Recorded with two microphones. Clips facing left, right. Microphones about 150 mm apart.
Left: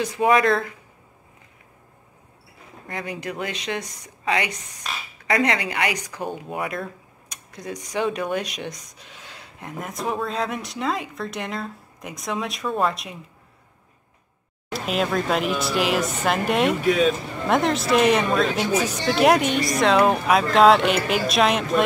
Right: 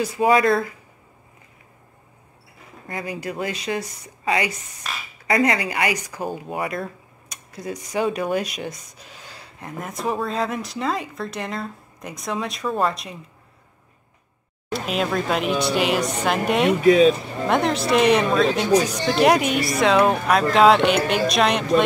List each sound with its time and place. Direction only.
0.0 s speech: 5° right (ahead or behind)
2.9 s speech: 5° right (ahead or behind)
14.7 s speech: centre (ahead or behind)
16.9 s speech: 35° right (ahead or behind)
17.2 s speech: centre (ahead or behind)